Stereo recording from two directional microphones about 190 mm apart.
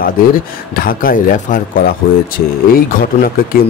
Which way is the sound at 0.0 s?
50° left (ahead or behind).